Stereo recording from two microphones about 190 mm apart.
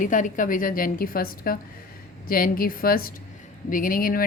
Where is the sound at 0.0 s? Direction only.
45° left (ahead or behind).